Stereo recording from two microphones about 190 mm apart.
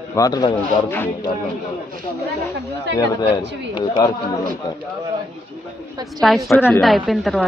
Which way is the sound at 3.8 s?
25° left (ahead or behind).